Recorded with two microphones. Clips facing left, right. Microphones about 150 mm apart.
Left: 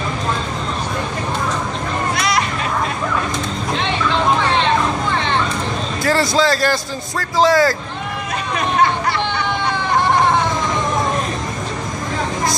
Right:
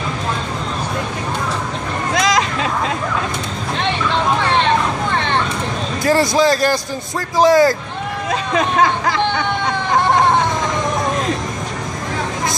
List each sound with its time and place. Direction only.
2.1 s hubbub: 90° right
6.0 s a man's voice: 15° right (ahead or behind)
8.8 s a sound: 90° right